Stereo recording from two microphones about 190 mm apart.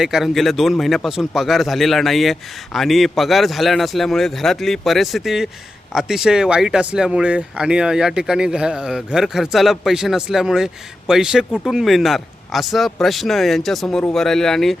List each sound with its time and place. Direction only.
0.0 s speech: centre (ahead or behind)